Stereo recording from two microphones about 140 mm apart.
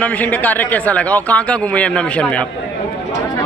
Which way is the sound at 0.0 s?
10° left (ahead or behind).